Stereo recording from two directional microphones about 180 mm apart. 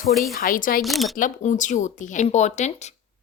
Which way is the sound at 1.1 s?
45° left (ahead or behind).